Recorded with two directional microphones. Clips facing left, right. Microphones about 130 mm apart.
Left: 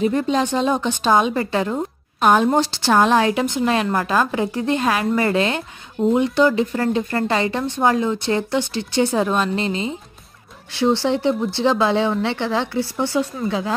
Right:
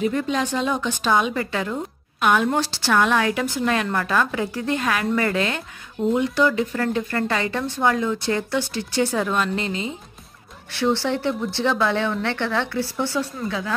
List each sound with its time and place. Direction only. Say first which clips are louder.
0.0 s speech: left 4 dB; 30° left (ahead or behind)
10.8 s speech: left 3 dB; 15° left (ahead or behind)